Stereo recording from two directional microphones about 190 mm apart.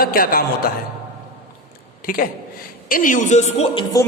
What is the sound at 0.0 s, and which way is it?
Speech, 50° left (ahead or behind).